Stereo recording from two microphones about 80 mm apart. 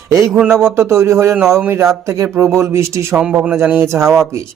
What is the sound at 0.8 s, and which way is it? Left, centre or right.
Speech, right.